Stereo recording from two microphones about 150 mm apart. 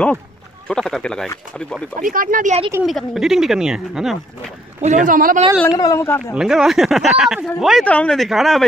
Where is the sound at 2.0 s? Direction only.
65° right (ahead or behind).